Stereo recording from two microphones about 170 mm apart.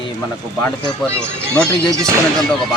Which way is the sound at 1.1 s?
15° right (ahead or behind).